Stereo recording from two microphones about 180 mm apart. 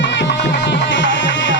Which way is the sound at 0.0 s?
80° left.